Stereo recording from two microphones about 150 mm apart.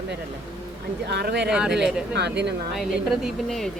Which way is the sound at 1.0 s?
90° right.